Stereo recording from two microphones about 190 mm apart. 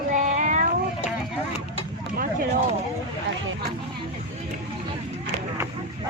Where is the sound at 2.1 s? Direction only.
50° right (ahead or behind).